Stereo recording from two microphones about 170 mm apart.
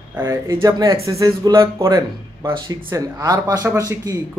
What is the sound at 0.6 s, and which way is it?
Speech, 20° right (ahead or behind).